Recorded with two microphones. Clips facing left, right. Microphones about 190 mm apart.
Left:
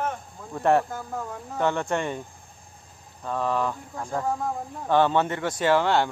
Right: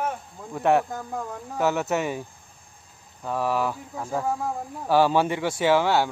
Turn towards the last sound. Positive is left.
turn(degrees=-5)  # may be behind; listen again after turning